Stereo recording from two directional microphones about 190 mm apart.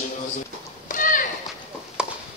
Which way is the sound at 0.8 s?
45° left (ahead or behind).